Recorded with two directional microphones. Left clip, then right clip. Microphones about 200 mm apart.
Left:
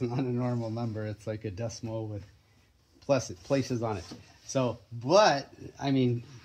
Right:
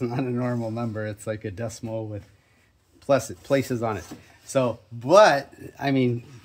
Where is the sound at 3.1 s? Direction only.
35° right (ahead or behind).